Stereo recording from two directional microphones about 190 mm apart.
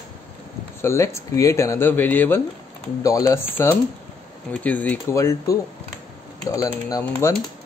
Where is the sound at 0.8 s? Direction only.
15° left (ahead or behind).